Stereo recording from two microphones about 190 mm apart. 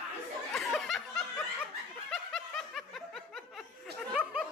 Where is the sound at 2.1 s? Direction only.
Centre (ahead or behind).